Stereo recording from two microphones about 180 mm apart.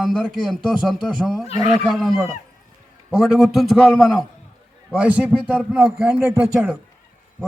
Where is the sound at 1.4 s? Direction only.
35° left (ahead or behind).